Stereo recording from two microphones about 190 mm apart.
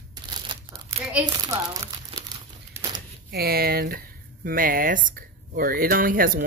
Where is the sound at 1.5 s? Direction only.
20° right (ahead or behind).